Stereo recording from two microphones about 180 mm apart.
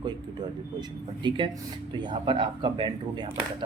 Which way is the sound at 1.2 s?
25° right (ahead or behind).